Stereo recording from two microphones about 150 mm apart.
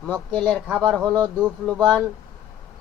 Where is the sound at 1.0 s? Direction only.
30° right (ahead or behind).